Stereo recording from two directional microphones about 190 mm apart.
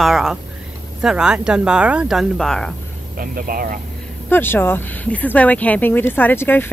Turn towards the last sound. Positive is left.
turn(degrees=10)  # may be behind; listen again after turning